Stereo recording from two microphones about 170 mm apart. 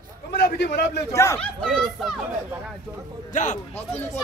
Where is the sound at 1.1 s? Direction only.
15° left (ahead or behind).